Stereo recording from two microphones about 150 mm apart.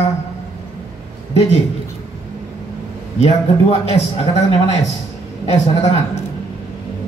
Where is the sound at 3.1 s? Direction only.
45° left (ahead or behind).